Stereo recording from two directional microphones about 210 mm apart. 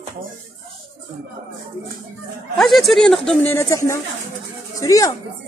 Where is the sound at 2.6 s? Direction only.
Centre (ahead or behind).